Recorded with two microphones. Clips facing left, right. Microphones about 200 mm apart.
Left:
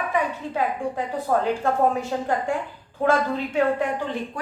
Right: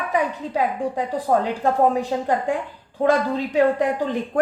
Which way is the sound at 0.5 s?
35° right (ahead or behind).